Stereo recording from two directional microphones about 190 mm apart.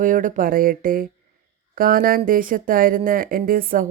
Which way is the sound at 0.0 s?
45° right (ahead or behind).